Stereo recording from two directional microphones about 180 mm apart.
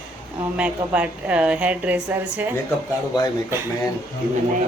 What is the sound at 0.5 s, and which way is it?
A woman's voice, 5° right (ahead or behind).